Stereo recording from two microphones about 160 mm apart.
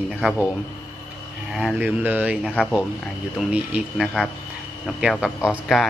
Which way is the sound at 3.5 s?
10° right (ahead or behind).